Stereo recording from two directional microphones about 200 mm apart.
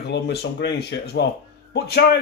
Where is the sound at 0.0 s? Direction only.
60° left (ahead or behind).